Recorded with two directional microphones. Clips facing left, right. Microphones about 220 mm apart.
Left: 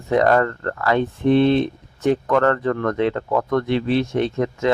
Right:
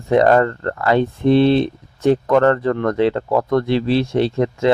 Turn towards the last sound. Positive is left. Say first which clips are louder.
# right 3 dB
turn(degrees=-30)  # may be behind; listen again after turning